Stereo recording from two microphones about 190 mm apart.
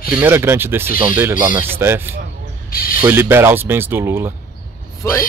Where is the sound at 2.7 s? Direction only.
50° left (ahead or behind).